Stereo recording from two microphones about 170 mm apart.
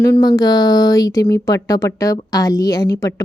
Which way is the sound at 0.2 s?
25° left (ahead or behind).